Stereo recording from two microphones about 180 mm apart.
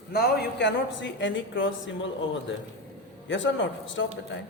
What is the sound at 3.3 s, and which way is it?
Speech, 90° left.